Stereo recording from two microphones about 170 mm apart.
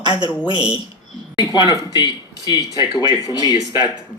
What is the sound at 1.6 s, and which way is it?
Speech, 25° left (ahead or behind).